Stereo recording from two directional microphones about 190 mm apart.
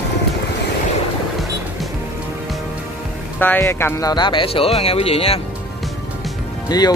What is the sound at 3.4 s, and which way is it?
Speech, 10° left (ahead or behind).